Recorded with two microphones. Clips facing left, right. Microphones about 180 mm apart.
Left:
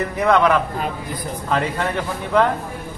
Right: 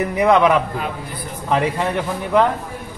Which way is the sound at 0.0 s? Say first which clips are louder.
Right 2 dB; 15° right (ahead or behind).